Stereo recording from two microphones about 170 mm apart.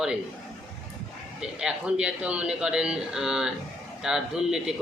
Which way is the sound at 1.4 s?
5° right (ahead or behind).